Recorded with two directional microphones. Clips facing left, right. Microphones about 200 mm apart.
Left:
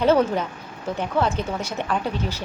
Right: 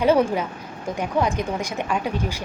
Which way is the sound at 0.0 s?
10° right (ahead or behind).